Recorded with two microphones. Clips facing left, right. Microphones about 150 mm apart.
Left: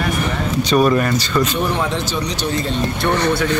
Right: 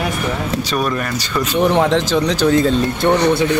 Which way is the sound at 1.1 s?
10° right (ahead or behind).